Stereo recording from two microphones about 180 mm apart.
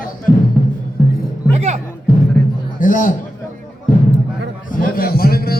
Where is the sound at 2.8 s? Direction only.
45° left (ahead or behind).